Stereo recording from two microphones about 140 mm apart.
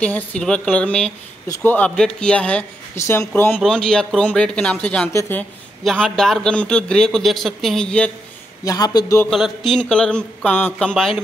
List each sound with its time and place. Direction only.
0.0 s speech: 10° left (ahead or behind)
3.0 s speech: 20° left (ahead or behind)
3.5 s a man's voice: 5° left (ahead or behind)
8.6 s a man's voice: 30° left (ahead or behind)
9.3 s a man's voice: centre (ahead or behind)